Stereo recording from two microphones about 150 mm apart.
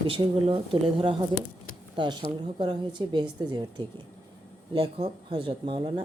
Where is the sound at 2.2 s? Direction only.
35° right (ahead or behind).